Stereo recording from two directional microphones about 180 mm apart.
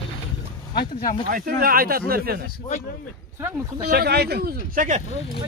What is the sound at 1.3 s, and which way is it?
Speech, 50° right (ahead or behind).